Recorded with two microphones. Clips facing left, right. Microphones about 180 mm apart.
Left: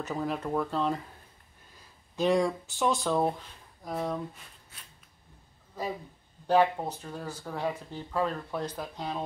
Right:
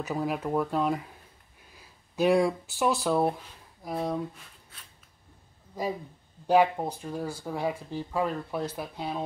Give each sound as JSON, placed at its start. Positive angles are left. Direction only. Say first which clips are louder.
{"t": 0.0, "sound": "speech", "louder": "right 2 dB", "side_deg": -10}
{"t": 6.4, "sound": "speech", "louder": "right 2 dB", "side_deg": -10}